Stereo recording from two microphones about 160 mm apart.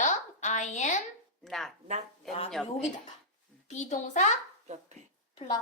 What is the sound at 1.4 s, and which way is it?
Speech, centre (ahead or behind).